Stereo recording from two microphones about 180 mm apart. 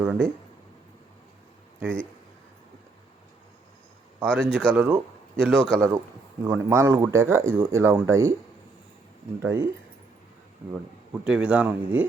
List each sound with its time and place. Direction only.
0.0 s speech: 10° right (ahead or behind)
4.2 s speech: centre (ahead or behind)
6.4 s speech: 15° right (ahead or behind)
9.4 s speech: 15° right (ahead or behind)
11.3 s speech: 5° right (ahead or behind)